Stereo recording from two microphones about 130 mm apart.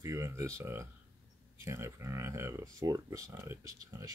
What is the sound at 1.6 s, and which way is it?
Speech, 20° right (ahead or behind).